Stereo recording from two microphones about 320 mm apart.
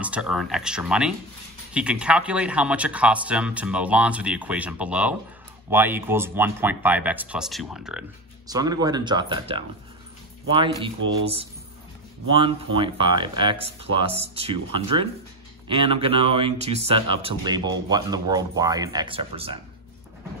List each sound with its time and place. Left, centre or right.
0.0 s speech: centre
12.3 s speech: centre